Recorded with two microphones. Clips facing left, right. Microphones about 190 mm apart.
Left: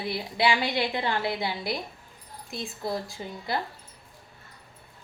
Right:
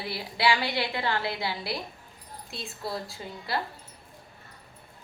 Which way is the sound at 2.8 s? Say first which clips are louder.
Left 2 dB; 15° left (ahead or behind).